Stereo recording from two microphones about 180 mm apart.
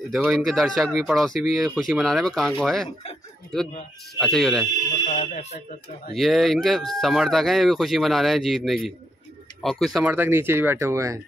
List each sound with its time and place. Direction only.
0.3 s speech: centre (ahead or behind)
5.0 s speech: 40° left (ahead or behind)
6.1 s speech: centre (ahead or behind)
10.1 s speech: 10° right (ahead or behind)